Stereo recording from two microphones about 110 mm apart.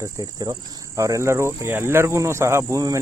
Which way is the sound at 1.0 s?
30° right (ahead or behind).